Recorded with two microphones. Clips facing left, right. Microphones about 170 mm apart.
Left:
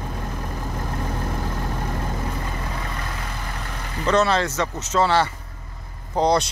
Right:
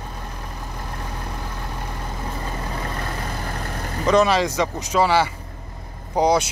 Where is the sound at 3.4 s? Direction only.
40° right (ahead or behind).